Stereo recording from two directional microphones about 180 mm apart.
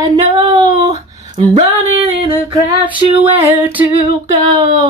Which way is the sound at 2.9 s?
30° right (ahead or behind).